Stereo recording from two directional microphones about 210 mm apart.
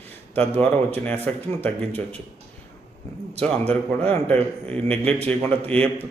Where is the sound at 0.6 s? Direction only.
10° left (ahead or behind).